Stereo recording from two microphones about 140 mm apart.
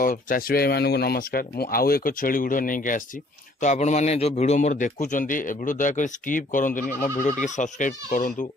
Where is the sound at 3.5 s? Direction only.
55° left (ahead or behind).